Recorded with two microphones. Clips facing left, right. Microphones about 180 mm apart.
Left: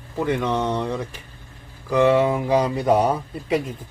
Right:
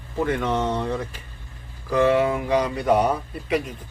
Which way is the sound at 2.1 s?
25° left (ahead or behind).